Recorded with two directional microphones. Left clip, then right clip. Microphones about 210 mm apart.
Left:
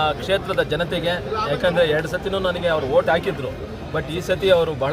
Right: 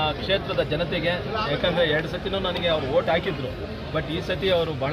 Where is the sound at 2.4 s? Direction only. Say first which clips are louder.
Left 3 dB; 15° left (ahead or behind).